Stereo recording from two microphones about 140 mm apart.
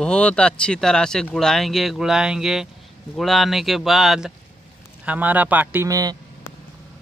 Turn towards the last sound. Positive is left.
turn(degrees=-25)  # may be behind; listen again after turning